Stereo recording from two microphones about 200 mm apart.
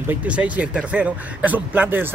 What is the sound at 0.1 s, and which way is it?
Speech, 5° right (ahead or behind).